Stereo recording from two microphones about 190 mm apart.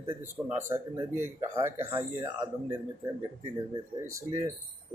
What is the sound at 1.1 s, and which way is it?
Speech, 15° right (ahead or behind).